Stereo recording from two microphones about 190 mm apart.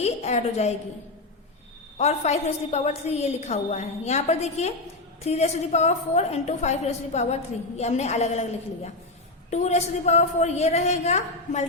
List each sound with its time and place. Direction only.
0.0 s a woman's voice: 35° left (ahead or behind)
2.0 s a woman's voice: 35° left (ahead or behind)